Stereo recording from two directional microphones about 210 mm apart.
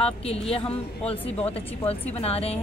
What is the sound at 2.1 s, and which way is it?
Speech, 30° left (ahead or behind).